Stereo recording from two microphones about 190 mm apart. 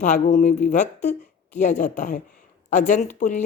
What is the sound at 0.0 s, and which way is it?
Speech, 35° left (ahead or behind).